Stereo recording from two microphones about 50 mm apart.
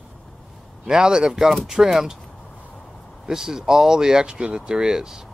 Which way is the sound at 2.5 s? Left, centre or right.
Left.